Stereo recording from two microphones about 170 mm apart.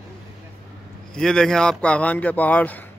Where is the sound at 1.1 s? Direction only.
5° left (ahead or behind).